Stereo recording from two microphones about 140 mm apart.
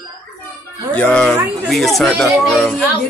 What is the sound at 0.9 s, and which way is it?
Speech, 10° left (ahead or behind).